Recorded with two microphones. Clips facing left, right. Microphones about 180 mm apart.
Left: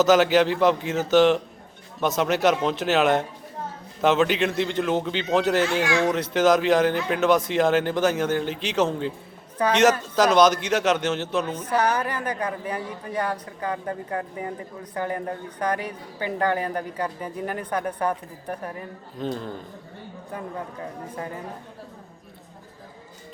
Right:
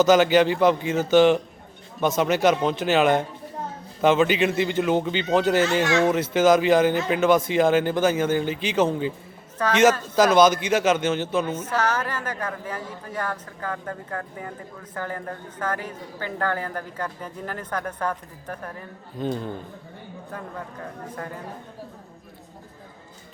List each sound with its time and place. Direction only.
0.0 s speech: centre (ahead or behind)
10.2 s speech: centre (ahead or behind)
11.7 s speech: 15° left (ahead or behind)
19.2 s speech: centre (ahead or behind)